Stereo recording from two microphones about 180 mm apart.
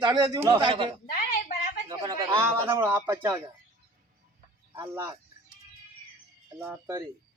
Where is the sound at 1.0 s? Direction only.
45° left (ahead or behind).